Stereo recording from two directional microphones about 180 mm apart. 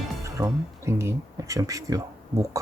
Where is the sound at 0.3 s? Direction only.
15° right (ahead or behind).